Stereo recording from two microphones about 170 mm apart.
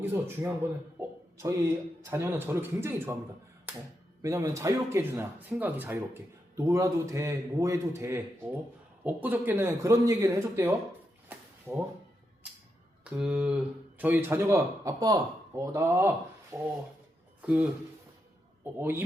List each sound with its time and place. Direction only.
0.0 s speech: 15° right (ahead or behind)
0.9 s a sound: 15° right (ahead or behind)
2.0 s speech: 15° right (ahead or behind)
4.2 s speech: 15° right (ahead or behind)
13.1 s speech: 5° right (ahead or behind)